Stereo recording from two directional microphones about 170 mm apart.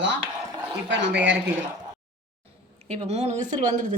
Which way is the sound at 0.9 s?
90° right.